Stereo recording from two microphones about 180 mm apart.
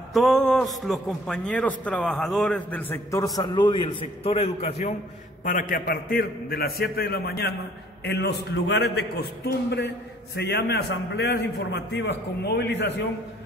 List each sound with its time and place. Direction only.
0.1 s a man's voice: centre (ahead or behind); by 4.9 s 35° left (ahead or behind)
5.4 s a man's voice: 45° left (ahead or behind); by 12.9 s 70° left (ahead or behind)